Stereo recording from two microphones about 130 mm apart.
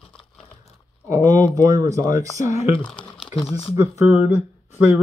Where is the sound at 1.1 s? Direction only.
25° right (ahead or behind).